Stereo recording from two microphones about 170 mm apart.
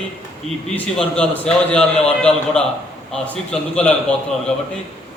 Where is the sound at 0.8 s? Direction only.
5° left (ahead or behind).